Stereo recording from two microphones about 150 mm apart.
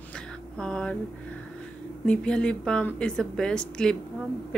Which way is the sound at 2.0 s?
5° left (ahead or behind).